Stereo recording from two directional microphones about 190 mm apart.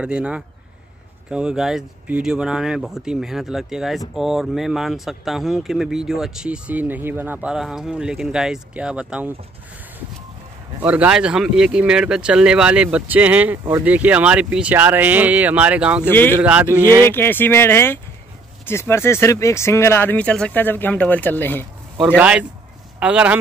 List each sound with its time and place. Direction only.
0.0 s speech: 5° right (ahead or behind)
10.8 s speech: 5° right (ahead or behind)
16.1 s speech: 10° left (ahead or behind)
16.4 s speech: 10° right (ahead or behind)
16.8 s speech: 20° right (ahead or behind)
17.1 s speech: 10° left (ahead or behind)
22.0 s speech: 5° right (ahead or behind)